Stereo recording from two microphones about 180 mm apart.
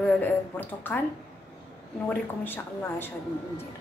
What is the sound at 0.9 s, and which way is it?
Speech, 10° left (ahead or behind).